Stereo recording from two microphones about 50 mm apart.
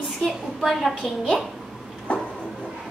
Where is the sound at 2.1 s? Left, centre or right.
Left.